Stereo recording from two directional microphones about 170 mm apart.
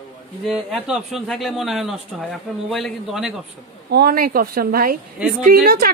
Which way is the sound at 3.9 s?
65° right (ahead or behind).